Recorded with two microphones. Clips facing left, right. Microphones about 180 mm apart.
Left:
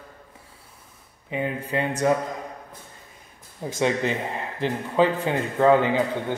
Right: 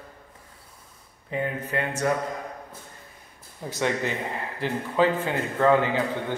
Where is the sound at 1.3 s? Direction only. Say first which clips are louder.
Left 1 dB; 15° left (ahead or behind).